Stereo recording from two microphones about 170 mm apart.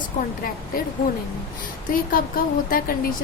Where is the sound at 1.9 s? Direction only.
55° left (ahead or behind).